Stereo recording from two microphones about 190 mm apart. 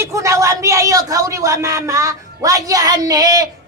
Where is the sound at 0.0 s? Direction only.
15° right (ahead or behind).